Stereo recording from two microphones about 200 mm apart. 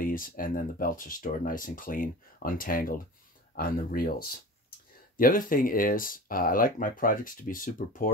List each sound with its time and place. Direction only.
0.0 s speech: 45° left (ahead or behind)